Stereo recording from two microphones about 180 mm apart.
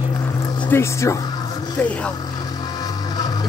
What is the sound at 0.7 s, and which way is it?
Speech, 15° left (ahead or behind).